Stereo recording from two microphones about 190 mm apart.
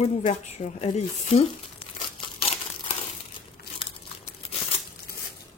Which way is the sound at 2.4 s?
30° left (ahead or behind).